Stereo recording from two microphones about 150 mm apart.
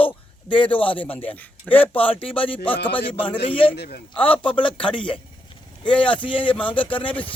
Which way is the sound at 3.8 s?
90° left.